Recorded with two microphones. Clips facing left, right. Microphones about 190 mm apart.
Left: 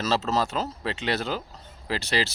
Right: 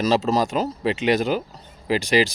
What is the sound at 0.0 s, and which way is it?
Speech, 15° right (ahead or behind).